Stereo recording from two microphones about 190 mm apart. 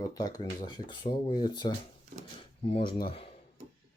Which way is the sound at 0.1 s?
20° left (ahead or behind).